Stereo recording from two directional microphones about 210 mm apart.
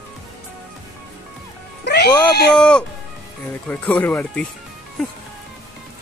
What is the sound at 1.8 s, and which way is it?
Speech, 50° left (ahead or behind).